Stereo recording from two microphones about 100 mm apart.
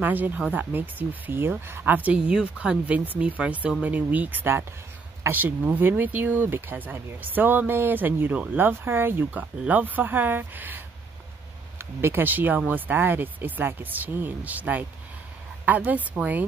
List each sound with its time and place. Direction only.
0.0 s speech: 20° right (ahead or behind)
11.8 s speech: 25° right (ahead or behind)